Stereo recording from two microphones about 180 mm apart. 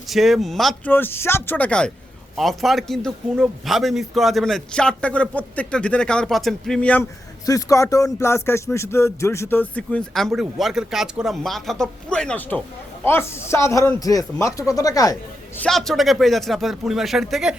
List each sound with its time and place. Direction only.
0.1 s a man's voice: centre (ahead or behind)
0.9 s a man's voice: 10° left (ahead or behind)
7.4 s a man's voice: 20° left (ahead or behind)
15.5 s a man's voice: 5° left (ahead or behind)